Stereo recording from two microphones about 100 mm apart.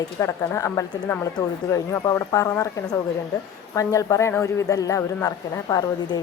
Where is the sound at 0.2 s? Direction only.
30° left (ahead or behind).